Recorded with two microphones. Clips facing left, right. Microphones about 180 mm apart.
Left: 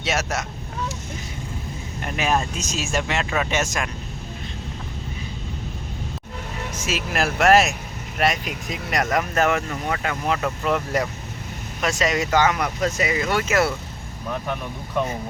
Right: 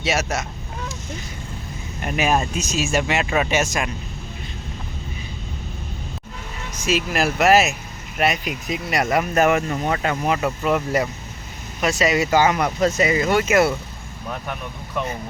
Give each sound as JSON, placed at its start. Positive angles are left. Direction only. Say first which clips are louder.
{"t": 0.0, "sound": "speech", "louder": "right 2 dB", "side_deg": 0}
{"t": 2.0, "sound": "speech", "louder": "right 2 dB", "side_deg": -10}
{"t": 6.8, "sound": "speech", "louder": "right 4 dB", "side_deg": 0}
{"t": 9.3, "sound": "speech", "louder": "right 3 dB", "side_deg": -15}
{"t": 9.9, "sound": "speech", "louder": "right 2 dB", "side_deg": -30}
{"t": 10.2, "sound": "speech", "louder": "right 1 dB", "side_deg": -15}
{"t": 12.6, "sound": "speech", "louder": "right 4 dB", "side_deg": -30}